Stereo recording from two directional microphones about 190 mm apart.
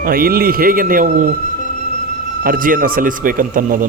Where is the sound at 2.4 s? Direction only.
45° right (ahead or behind).